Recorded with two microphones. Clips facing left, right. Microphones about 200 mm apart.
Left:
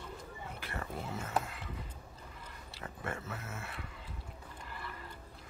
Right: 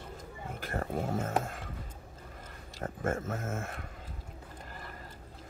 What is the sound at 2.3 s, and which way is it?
Speech, 45° right (ahead or behind).